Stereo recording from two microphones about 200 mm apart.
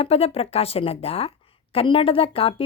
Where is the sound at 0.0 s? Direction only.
30° left (ahead or behind).